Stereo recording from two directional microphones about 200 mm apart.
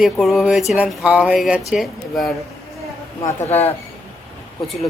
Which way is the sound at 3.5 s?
30° left (ahead or behind).